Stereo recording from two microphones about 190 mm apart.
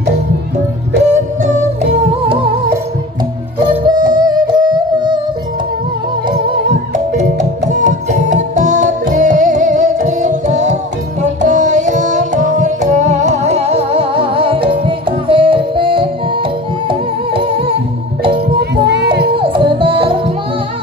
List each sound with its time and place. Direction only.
1.1 s yodeling: 40° right (ahead or behind)
3.5 s music: 20° right (ahead or behind)
6.2 s music: 25° right (ahead or behind)
7.2 s music: 40° right (ahead or behind)
18.6 s music: 60° right (ahead or behind)
19.3 s music: 25° right (ahead or behind)